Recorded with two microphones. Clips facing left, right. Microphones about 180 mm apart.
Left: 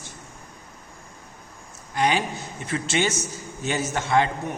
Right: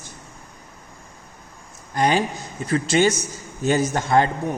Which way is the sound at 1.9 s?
45° right (ahead or behind).